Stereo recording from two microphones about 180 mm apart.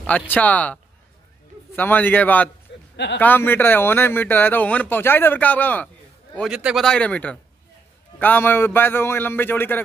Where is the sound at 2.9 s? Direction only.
75° left (ahead or behind).